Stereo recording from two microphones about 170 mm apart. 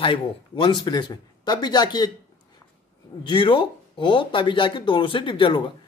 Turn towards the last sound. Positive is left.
turn(degrees=30)  # may be behind; listen again after turning